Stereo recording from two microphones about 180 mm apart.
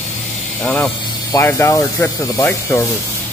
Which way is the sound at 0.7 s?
5° left (ahead or behind).